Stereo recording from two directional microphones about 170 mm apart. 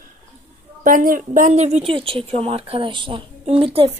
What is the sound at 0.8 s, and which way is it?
A woman's voice, 55° right (ahead or behind).